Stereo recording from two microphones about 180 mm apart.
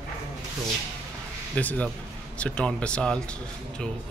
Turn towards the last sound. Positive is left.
turn(degrees=5)  # may be behind; listen again after turning